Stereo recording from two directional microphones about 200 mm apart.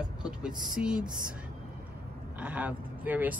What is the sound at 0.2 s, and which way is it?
Speech, 5° right (ahead or behind).